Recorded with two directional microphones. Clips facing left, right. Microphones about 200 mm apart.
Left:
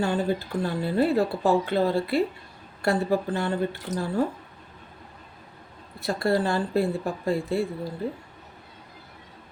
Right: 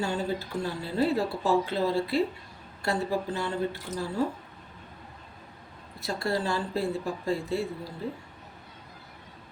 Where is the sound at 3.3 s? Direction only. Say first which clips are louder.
Left 4 dB; 55° left (ahead or behind).